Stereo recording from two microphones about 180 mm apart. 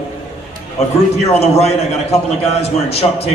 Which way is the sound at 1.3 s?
35° left (ahead or behind).